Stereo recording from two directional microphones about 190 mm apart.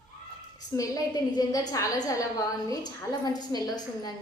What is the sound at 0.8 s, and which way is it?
A woman's voice, 20° left (ahead or behind).